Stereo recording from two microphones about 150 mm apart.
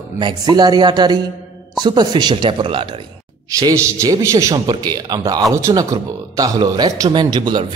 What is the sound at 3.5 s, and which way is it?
A man's voice, 20° right (ahead or behind).